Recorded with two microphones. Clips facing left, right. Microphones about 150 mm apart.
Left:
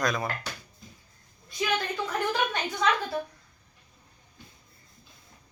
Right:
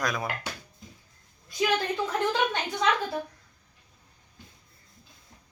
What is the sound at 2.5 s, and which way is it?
Speech, 15° right (ahead or behind).